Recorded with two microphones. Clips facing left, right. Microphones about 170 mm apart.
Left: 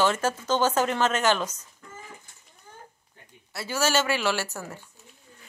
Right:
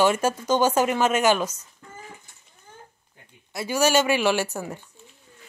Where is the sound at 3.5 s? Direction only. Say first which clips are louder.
Right 5 dB; 15° right (ahead or behind).